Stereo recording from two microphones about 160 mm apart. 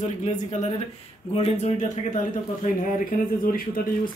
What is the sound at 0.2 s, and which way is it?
Speech, 45° left (ahead or behind).